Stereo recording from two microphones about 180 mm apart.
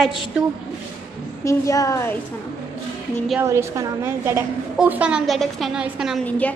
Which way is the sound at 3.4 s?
15° right (ahead or behind).